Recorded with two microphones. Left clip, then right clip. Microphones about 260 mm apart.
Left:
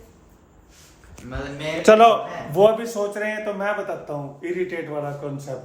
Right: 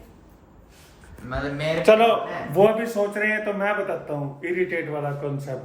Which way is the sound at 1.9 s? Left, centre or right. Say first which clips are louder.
Left 4 dB; left.